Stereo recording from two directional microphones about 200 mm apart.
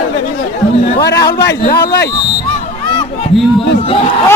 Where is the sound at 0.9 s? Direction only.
55° left (ahead or behind).